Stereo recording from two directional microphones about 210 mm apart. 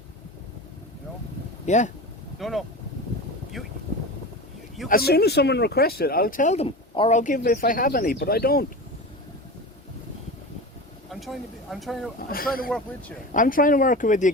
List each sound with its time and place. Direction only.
1.6 s speech: 35° left (ahead or behind)
2.4 s speech: centre (ahead or behind)
4.9 s speech: 50° left (ahead or behind)
11.1 s speech: centre (ahead or behind)
13.3 s speech: 40° left (ahead or behind)